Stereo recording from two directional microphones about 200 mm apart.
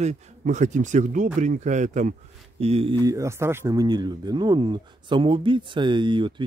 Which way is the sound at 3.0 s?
15° right (ahead or behind).